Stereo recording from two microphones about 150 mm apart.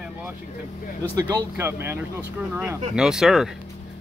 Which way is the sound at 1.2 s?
20° right (ahead or behind).